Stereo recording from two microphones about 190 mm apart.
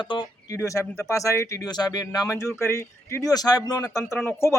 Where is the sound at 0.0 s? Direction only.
20° left (ahead or behind).